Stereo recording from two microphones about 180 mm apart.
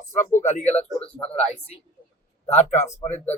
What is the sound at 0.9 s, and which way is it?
Speech, 5° left (ahead or behind).